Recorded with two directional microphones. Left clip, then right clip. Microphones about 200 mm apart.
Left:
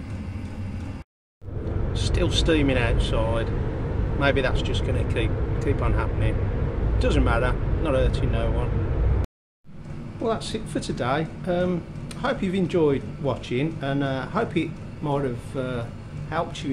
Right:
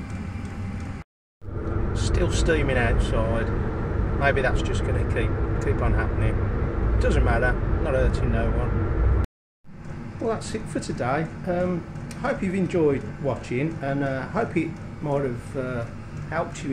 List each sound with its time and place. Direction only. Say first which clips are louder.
2.0 s speech: left 3 dB; centre (ahead or behind)
10.2 s speech: left 1 dB; 5° left (ahead or behind)